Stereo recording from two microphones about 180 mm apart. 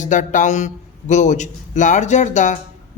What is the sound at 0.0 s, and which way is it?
A man's voice, 45° left (ahead or behind).